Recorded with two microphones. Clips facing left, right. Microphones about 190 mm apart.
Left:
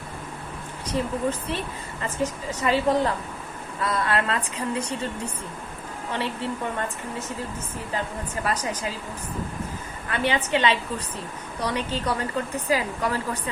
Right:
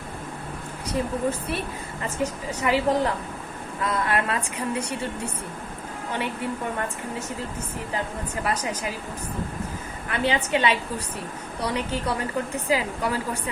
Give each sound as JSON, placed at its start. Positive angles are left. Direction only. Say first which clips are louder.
{"t": 0.9, "sound": "a woman's voice", "louder": "even", "side_deg": -10}
{"t": 10.1, "sound": "a woman's voice", "louder": "even", "side_deg": -15}